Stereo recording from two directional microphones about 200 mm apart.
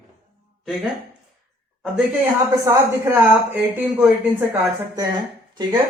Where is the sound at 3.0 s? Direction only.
10° right (ahead or behind).